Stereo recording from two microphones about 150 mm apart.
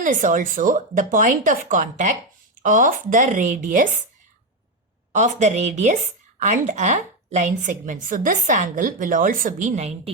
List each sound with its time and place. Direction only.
0.0 s speech: 60° right (ahead or behind)
5.1 s speech: 50° right (ahead or behind)